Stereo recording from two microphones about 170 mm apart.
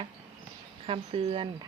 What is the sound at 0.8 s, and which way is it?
Speech, 35° right (ahead or behind).